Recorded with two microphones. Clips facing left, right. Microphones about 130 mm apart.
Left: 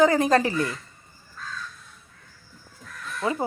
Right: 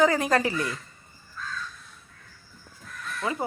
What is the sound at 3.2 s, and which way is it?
Speech, 25° left (ahead or behind).